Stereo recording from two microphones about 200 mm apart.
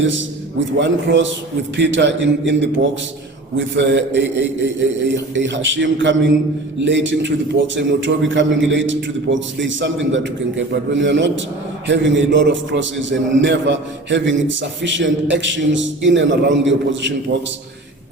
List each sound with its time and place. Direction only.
0.0 s a man's voice: 65° right (ahead or behind)